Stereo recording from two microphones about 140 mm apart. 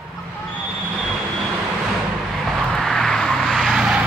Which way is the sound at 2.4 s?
Centre (ahead or behind).